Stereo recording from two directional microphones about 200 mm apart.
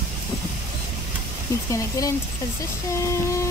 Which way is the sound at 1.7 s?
15° left (ahead or behind).